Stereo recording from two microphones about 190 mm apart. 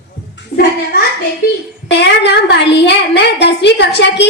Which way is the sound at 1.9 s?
65° left (ahead or behind).